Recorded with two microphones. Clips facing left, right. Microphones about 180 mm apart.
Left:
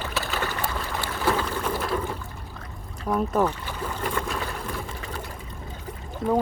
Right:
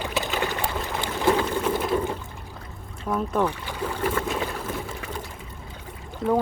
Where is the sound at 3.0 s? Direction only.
10° left (ahead or behind).